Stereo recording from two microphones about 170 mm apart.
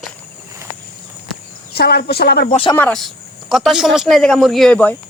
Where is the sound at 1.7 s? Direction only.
70° left (ahead or behind).